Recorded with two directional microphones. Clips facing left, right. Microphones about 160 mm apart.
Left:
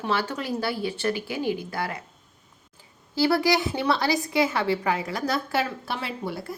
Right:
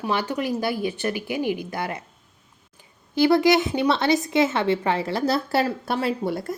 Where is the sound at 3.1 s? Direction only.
20° right (ahead or behind); by 6.5 s 45° right (ahead or behind).